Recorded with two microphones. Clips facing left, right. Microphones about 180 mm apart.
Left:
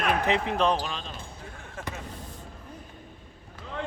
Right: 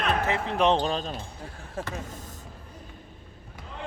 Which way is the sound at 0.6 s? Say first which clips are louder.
Right 3 dB; 30° right (ahead or behind).